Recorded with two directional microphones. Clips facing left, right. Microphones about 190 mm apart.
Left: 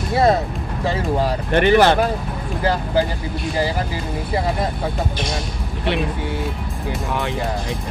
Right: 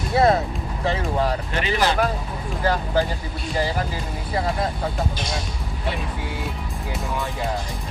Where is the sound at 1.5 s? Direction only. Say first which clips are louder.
Left 9 dB; 60° left (ahead or behind).